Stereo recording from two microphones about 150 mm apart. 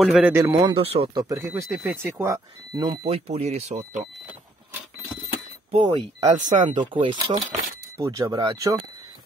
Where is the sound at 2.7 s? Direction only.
35° right (ahead or behind).